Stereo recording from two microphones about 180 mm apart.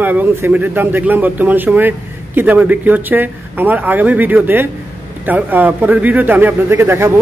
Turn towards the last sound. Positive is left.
turn(degrees=-15)  # may be behind; listen again after turning